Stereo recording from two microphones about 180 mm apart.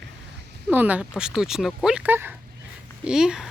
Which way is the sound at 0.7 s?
10° right (ahead or behind).